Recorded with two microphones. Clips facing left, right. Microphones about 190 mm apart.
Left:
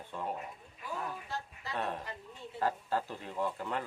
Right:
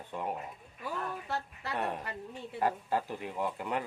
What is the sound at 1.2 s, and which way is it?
Speech, 65° right (ahead or behind).